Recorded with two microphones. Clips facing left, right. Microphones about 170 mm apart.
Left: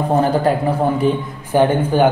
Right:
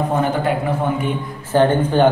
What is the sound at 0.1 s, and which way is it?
Speech, 35° left (ahead or behind).